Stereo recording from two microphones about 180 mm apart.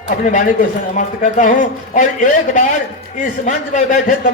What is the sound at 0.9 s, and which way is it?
A man's voice, 45° left (ahead or behind).